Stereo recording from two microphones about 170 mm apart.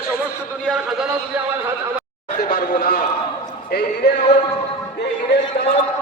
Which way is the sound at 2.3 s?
75° left (ahead or behind).